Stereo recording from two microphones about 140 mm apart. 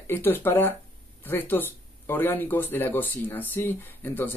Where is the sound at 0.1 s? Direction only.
15° left (ahead or behind).